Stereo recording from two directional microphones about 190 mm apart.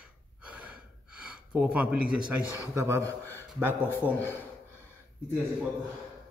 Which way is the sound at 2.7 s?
15° right (ahead or behind).